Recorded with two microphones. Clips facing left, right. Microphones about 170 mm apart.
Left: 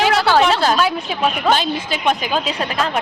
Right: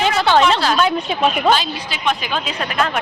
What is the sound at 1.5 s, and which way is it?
Speech, 50° left (ahead or behind).